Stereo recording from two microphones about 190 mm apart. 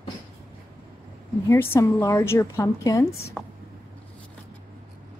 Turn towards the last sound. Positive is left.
turn(degrees=5)  # may be behind; listen again after turning